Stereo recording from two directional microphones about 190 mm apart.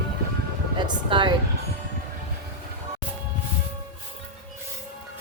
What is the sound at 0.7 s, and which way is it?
Speech, 25° right (ahead or behind).